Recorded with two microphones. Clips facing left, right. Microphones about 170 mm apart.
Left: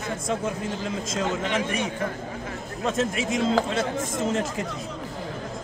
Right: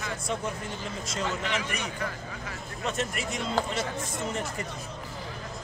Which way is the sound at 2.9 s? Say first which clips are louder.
Left 8 dB; 90° left.